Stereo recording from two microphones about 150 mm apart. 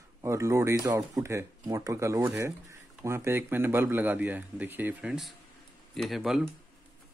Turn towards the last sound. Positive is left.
turn(degrees=0)  # may be behind; listen again after turning